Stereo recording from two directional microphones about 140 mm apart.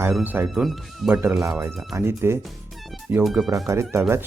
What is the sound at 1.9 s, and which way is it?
Speech, 20° right (ahead or behind).